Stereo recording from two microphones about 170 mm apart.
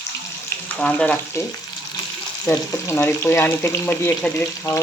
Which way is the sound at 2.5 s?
15° left (ahead or behind).